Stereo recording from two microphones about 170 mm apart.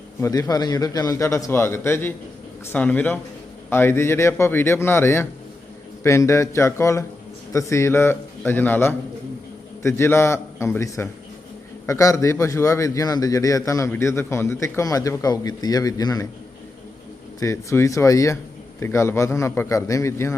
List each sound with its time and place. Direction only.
0.2 s a man's voice: 20° left (ahead or behind)
17.4 s a man's voice: 15° left (ahead or behind)